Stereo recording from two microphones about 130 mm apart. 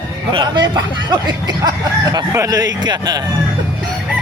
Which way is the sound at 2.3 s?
25° right (ahead or behind).